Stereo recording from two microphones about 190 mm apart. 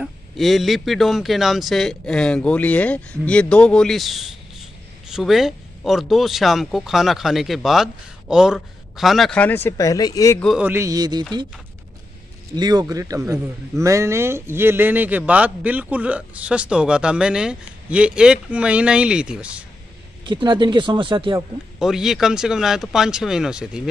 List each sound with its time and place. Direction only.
0.0 s speech: centre (ahead or behind); by 10.4 s 15° left (ahead or behind)
10.6 s a man's voice: 15° right (ahead or behind)
12.5 s a man's voice: 20° right (ahead or behind); by 19.6 s 5° right (ahead or behind)
20.2 s speech: 25° right (ahead or behind)
21.7 s speech: centre (ahead or behind)